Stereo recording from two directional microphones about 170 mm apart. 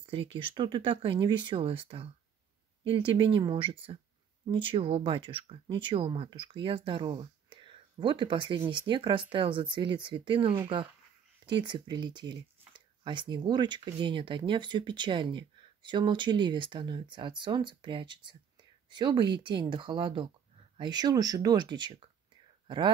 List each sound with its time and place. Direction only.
0.0 s speech: 30° right (ahead or behind)